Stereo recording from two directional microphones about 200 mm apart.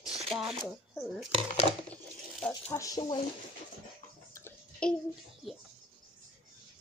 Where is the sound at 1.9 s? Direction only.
5° left (ahead or behind).